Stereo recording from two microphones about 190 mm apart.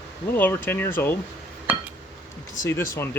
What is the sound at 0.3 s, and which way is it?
Speech, 10° left (ahead or behind).